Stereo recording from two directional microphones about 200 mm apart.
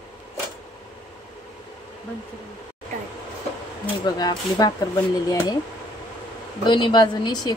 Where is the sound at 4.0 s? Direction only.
20° left (ahead or behind).